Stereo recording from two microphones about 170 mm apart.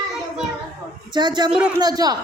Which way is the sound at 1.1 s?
25° right (ahead or behind).